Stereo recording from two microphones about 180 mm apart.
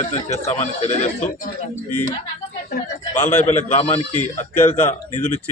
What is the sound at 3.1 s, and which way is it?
Speech, 40° left (ahead or behind).